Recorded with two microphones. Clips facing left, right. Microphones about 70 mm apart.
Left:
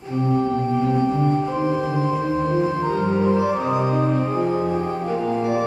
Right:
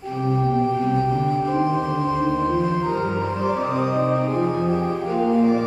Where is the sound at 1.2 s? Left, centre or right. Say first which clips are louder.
Even; centre.